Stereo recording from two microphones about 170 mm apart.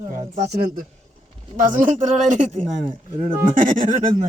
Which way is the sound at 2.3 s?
45° right (ahead or behind).